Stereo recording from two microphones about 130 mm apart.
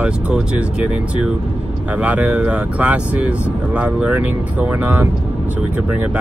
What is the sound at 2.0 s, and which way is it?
Speech, 10° right (ahead or behind).